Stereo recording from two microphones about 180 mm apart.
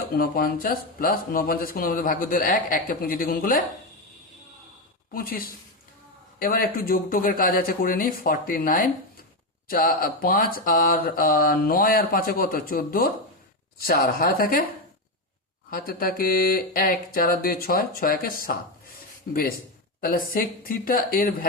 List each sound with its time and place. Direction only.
0.1 s speech: 55° left (ahead or behind)
5.1 s speech: 55° left (ahead or behind)
15.7 s speech: 55° left (ahead or behind)